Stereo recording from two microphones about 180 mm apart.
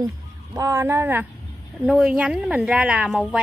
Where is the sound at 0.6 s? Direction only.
15° right (ahead or behind).